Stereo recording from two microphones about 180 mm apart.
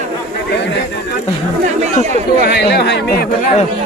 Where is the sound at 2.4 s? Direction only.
65° left (ahead or behind).